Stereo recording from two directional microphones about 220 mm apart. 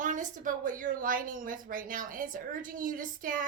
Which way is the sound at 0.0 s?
35° right (ahead or behind).